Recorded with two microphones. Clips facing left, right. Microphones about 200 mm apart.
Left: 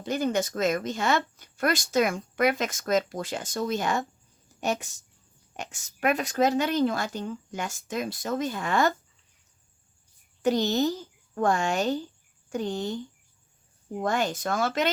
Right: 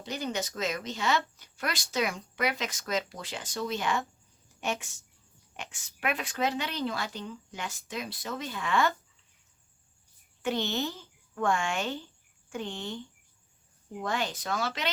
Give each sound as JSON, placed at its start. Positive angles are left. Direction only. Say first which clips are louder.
{"t": 0.0, "sound": "speech", "louder": "left 7 dB", "side_deg": 50}
{"t": 10.4, "sound": "speech", "louder": "left 7 dB", "side_deg": 40}